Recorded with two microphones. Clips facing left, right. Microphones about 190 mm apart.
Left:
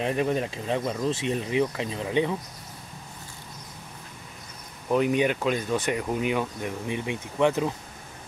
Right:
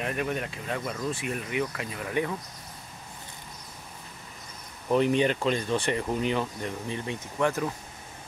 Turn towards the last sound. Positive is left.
turn(degrees=20)  # may be behind; listen again after turning